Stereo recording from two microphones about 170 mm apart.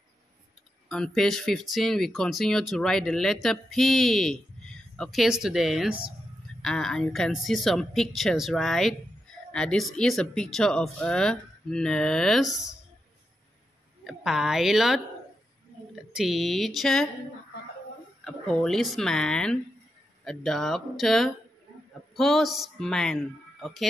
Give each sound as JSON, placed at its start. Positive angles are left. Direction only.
{"t": 0.8, "sound": "speech", "side_deg": 5}
{"t": 14.0, "sound": "speech", "side_deg": 0}
{"t": 18.2, "sound": "speech", "side_deg": 5}